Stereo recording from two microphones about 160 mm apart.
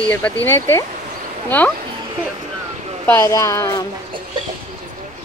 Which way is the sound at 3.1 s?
20° left (ahead or behind).